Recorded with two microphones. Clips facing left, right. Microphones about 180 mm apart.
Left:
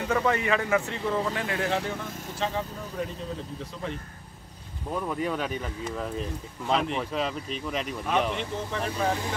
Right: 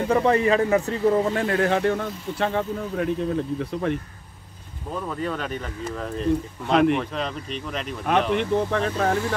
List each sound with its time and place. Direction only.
0.0 s speech: 35° right (ahead or behind); by 4.0 s 60° right (ahead or behind)
5.0 s speech: 10° left (ahead or behind)
6.7 s speech: 65° right (ahead or behind)
7.0 s speech: 5° left (ahead or behind)
8.1 s speech: 60° right (ahead or behind)